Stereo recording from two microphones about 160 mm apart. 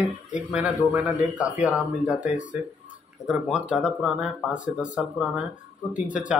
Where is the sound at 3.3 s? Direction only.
5° right (ahead or behind).